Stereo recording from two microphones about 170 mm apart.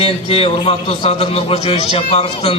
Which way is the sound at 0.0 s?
35° left (ahead or behind).